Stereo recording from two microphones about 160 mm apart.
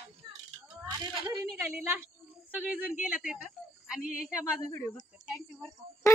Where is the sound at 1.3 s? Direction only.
15° right (ahead or behind).